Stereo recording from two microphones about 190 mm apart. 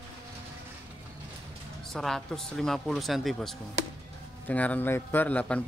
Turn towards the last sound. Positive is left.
turn(degrees=10)  # may be behind; listen again after turning